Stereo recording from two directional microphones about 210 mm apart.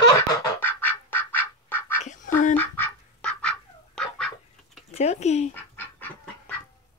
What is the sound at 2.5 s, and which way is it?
Bird, 10° left (ahead or behind).